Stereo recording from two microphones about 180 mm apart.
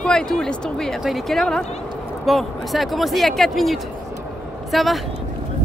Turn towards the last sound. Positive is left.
turn(degrees=0)  # may be behind; listen again after turning